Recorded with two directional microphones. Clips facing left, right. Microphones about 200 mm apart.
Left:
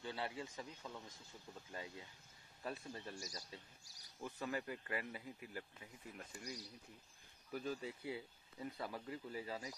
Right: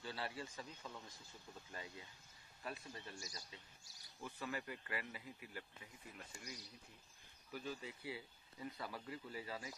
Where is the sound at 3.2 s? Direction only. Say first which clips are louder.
Left 3 dB; 40° left (ahead or behind).